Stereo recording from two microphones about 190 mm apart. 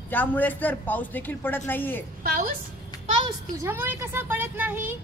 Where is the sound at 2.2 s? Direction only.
50° right (ahead or behind).